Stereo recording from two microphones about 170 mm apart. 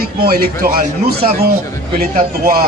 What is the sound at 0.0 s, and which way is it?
A man's voice, 65° right (ahead or behind).